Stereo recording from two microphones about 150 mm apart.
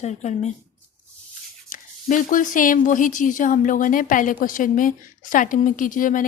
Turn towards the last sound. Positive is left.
turn(degrees=65)  # may be behind; listen again after turning